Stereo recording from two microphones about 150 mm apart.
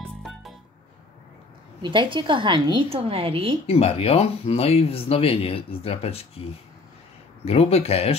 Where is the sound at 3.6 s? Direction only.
40° left (ahead or behind).